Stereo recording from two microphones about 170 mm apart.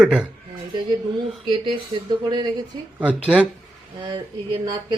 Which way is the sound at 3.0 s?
5° right (ahead or behind).